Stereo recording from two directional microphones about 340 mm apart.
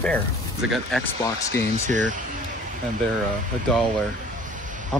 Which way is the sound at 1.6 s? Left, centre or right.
Right.